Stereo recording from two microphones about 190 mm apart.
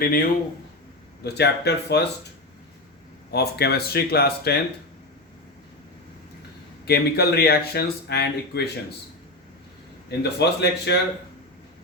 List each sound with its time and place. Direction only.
0.0 s a man's voice: 50° left (ahead or behind)
3.3 s speech: 55° left (ahead or behind)
6.8 s speech: 55° left (ahead or behind)
10.1 s speech: 60° left (ahead or behind)